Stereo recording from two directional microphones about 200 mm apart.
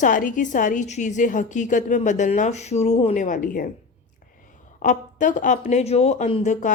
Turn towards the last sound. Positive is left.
turn(degrees=35)  # may be behind; listen again after turning